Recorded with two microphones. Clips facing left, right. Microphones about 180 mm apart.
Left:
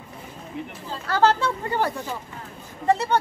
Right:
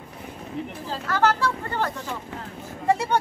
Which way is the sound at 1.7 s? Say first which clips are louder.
Left 3 dB; 10° left (ahead or behind).